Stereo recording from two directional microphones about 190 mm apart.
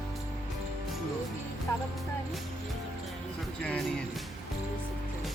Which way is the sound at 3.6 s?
5° left (ahead or behind).